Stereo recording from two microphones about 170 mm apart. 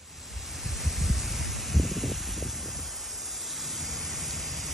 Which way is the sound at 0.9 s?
Centre (ahead or behind).